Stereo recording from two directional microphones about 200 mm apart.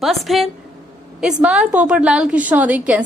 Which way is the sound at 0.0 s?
Centre (ahead or behind).